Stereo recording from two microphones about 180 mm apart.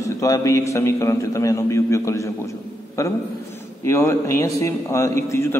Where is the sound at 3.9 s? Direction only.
15° left (ahead or behind).